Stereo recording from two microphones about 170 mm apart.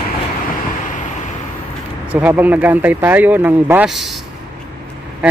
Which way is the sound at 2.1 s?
10° right (ahead or behind).